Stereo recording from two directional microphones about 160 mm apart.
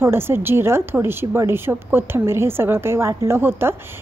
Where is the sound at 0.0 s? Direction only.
15° right (ahead or behind).